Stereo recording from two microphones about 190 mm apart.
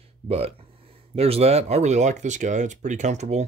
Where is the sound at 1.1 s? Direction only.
30° right (ahead or behind).